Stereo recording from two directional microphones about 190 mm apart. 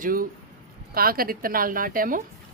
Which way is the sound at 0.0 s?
50° right (ahead or behind).